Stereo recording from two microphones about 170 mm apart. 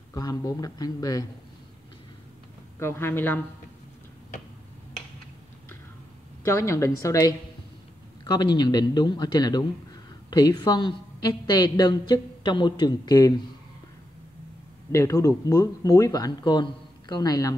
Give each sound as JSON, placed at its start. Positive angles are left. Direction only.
{"t": 0.1, "sound": "a woman's voice", "side_deg": 20}
{"t": 2.8, "sound": "a woman's voice", "side_deg": 15}
{"t": 6.4, "sound": "a woman's voice", "side_deg": 15}
{"t": 14.9, "sound": "a woman's voice", "side_deg": 15}